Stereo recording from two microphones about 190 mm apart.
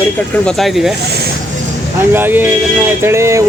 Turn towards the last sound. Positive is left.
turn(degrees=-15)  # may be behind; listen again after turning